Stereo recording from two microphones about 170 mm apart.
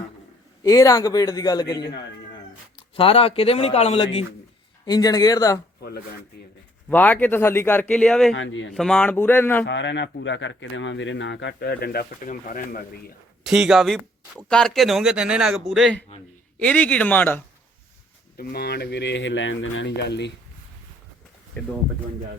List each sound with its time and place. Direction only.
0.6 s a man's voice: 20° left (ahead or behind); by 4.3 s 35° left (ahead or behind)
4.9 s a man's voice: 20° left (ahead or behind)
6.9 s speech: 10° left (ahead or behind)
8.3 s speech: 90° left
8.7 s speech: 5° left (ahead or behind)
9.6 s speech: 90° left; by 13.1 s 55° left (ahead or behind)
13.4 s speech: 5° right (ahead or behind)
18.3 s speech: 70° left (ahead or behind); by 20.3 s 85° left
21.6 s speech: 10° left (ahead or behind)